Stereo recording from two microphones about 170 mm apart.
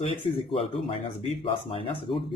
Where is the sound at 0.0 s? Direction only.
35° left (ahead or behind).